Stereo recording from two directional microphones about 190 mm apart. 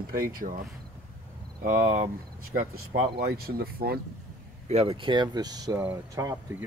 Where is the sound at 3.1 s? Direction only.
55° right (ahead or behind).